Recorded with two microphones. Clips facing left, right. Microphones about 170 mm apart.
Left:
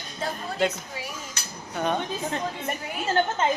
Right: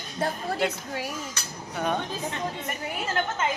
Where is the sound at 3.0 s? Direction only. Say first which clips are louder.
Left 5 dB; 30° left (ahead or behind).